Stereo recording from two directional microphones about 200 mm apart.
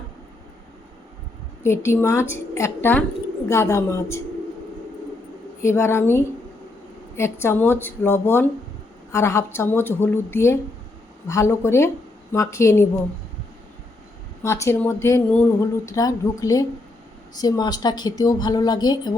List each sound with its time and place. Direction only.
1.6 s a woman's voice: 15° left (ahead or behind)
5.6 s a woman's voice: 15° left (ahead or behind)
14.4 s a woman's voice: 15° left (ahead or behind)